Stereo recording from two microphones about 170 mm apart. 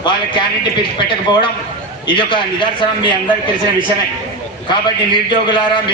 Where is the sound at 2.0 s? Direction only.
30° left (ahead or behind).